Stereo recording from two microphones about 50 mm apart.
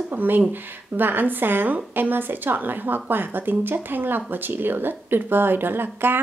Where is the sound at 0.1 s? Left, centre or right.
Right.